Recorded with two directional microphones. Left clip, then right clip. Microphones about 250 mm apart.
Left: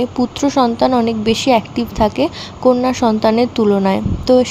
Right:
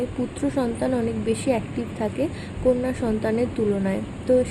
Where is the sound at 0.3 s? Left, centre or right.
Left.